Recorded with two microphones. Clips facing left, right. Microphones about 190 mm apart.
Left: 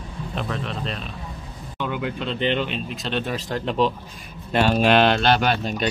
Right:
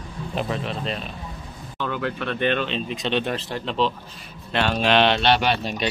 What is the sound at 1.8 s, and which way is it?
A man's voice, 15° left (ahead or behind).